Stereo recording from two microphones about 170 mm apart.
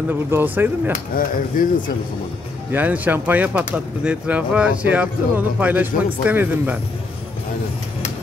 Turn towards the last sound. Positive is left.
turn(degrees=-10)  # may be behind; listen again after turning